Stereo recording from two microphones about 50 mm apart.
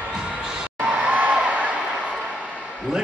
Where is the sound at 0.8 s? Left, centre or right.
Right.